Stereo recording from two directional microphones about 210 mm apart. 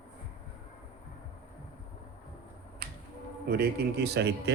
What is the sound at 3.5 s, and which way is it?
Speech, 50° right (ahead or behind).